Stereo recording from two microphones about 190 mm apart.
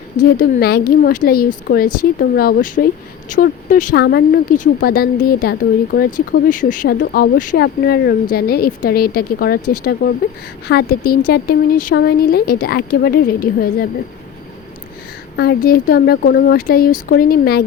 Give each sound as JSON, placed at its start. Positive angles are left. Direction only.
{"t": 0.3, "sound": "speech", "side_deg": 55}
{"t": 4.0, "sound": "speech", "side_deg": 60}
{"t": 4.5, "sound": "speech", "side_deg": 45}
{"t": 15.4, "sound": "speech", "side_deg": 55}